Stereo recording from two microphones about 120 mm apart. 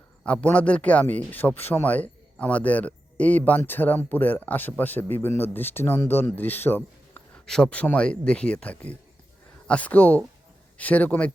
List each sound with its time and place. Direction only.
0.3 s speech: 10° left (ahead or behind)
7.4 s speech: 5° left (ahead or behind)